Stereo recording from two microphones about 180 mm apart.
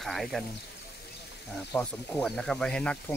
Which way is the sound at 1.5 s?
5° left (ahead or behind).